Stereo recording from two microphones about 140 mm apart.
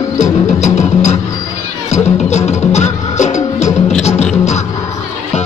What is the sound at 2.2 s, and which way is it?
Music, 55° left (ahead or behind).